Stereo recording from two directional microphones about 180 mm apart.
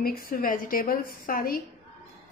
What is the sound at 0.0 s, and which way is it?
Speech, 55° left (ahead or behind).